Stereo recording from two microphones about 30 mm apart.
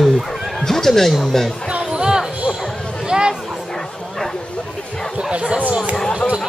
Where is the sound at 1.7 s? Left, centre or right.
Right.